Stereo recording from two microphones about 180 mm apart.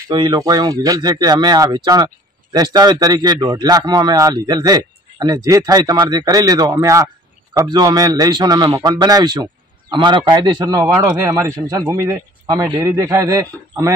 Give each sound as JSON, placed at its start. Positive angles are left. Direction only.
{"t": 0.1, "sound": "a man's voice", "side_deg": -20}